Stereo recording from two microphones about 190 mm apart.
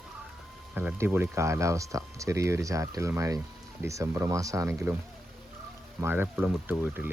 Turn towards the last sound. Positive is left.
turn(degrees=-10)  # may be behind; listen again after turning